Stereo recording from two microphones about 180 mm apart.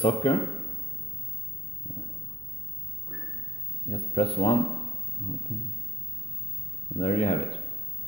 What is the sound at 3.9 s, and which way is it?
Speech, 35° left (ahead or behind).